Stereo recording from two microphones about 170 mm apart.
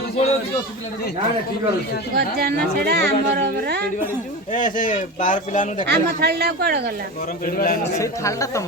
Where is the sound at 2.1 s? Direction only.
65° right (ahead or behind).